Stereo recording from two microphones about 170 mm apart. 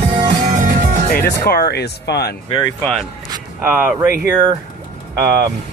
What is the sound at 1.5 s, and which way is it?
Speech, 65° left (ahead or behind).